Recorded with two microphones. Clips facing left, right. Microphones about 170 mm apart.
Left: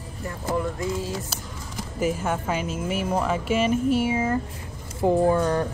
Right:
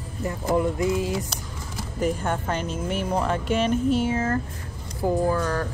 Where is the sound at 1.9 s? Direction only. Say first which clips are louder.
Even; 5° left (ahead or behind).